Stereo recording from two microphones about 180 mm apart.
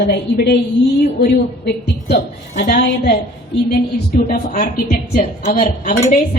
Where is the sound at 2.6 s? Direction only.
60° left (ahead or behind).